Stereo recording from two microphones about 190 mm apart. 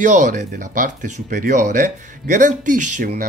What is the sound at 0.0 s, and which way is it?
Speech, 40° right (ahead or behind).